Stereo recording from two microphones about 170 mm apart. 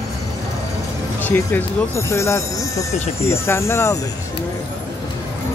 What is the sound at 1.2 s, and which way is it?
Speech, 10° left (ahead or behind).